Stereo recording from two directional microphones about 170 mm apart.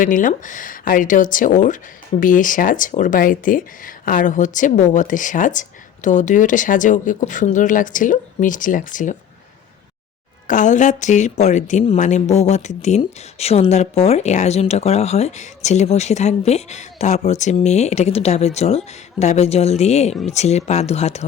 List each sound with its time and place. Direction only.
0.0 s speech: 50° left (ahead or behind)
10.4 s speech: 45° left (ahead or behind)